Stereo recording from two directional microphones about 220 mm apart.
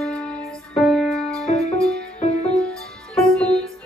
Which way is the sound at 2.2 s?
30° left (ahead or behind).